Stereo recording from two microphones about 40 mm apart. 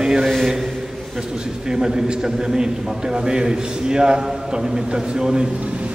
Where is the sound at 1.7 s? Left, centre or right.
Centre.